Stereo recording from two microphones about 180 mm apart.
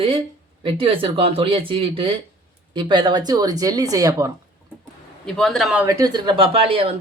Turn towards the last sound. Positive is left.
turn(degrees=-30)  # may be behind; listen again after turning